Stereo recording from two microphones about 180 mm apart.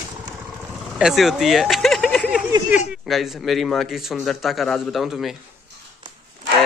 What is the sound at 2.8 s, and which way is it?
Speech, centre (ahead or behind).